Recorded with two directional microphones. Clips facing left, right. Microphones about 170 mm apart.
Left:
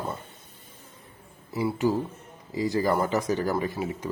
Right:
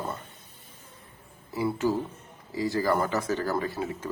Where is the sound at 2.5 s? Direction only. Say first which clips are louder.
Left 1 dB; 20° left (ahead or behind).